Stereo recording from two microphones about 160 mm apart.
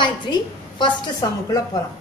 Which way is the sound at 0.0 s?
30° left (ahead or behind).